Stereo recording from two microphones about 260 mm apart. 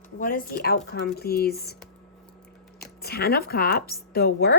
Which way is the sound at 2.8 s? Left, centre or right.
Left.